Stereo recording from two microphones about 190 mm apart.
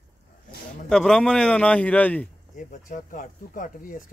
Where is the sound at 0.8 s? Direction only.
5° left (ahead or behind).